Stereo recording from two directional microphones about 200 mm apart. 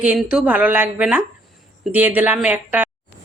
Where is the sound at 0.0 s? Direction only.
5° right (ahead or behind).